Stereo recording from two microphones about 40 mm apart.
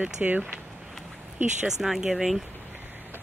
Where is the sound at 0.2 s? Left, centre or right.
Right.